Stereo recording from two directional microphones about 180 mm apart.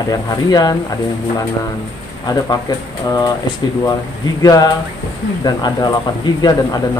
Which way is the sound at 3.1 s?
20° left (ahead or behind).